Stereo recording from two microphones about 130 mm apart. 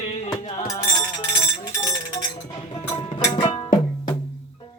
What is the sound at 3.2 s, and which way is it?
Music, 35° left (ahead or behind).